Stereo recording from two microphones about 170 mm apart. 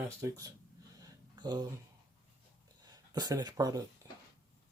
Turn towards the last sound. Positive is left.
turn(degrees=-20)  # may be behind; listen again after turning